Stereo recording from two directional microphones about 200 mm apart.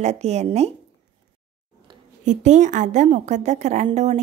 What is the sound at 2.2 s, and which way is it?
A woman's voice, 35° right (ahead or behind).